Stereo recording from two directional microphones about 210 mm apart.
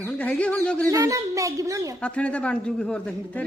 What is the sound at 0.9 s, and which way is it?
Speech, 15° right (ahead or behind).